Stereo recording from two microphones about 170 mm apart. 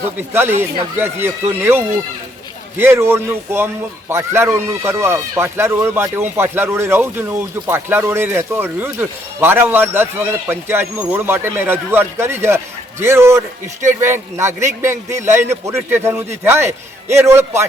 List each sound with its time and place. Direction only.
0.3 s speech: 15° right (ahead or behind)